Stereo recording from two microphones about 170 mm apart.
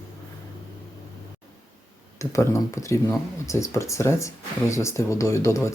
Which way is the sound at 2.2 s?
15° left (ahead or behind).